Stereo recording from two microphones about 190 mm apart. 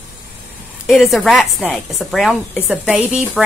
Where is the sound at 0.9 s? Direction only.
Centre (ahead or behind).